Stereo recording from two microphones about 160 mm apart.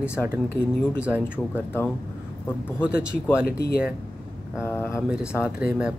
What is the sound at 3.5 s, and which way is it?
Speech, 70° left (ahead or behind).